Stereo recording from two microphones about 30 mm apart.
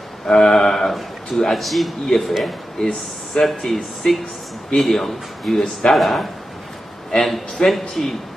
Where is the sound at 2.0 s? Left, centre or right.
Centre.